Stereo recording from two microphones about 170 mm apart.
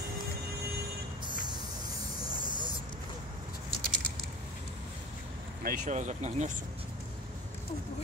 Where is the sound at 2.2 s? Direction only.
25° right (ahead or behind).